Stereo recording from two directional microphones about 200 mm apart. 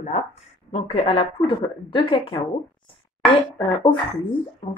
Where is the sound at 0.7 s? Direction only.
30° left (ahead or behind).